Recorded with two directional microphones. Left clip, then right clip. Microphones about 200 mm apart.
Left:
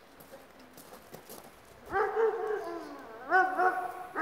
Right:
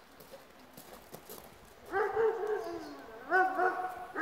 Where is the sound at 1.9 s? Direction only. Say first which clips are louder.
Left 2 dB; 30° left (ahead or behind).